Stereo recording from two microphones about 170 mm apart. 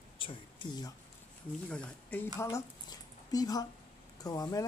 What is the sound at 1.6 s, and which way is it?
A man's voice, 10° left (ahead or behind).